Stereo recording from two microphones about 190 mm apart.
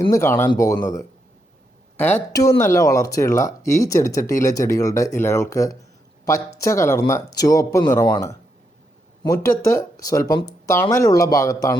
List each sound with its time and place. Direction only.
0.1 s speech: 15° left (ahead or behind)